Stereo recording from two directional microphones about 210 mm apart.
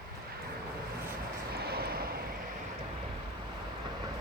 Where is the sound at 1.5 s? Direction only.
50° right (ahead or behind).